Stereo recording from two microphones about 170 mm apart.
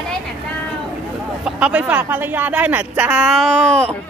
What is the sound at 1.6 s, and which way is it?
Speech, 5° right (ahead or behind).